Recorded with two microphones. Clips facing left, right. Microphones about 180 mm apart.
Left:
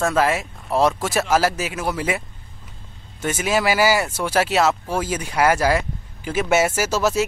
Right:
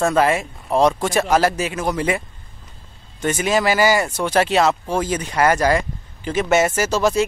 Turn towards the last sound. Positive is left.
turn(degrees=5)  # may be behind; listen again after turning